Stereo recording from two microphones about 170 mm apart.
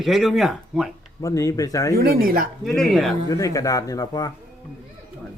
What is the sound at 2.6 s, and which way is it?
Speech, centre (ahead or behind).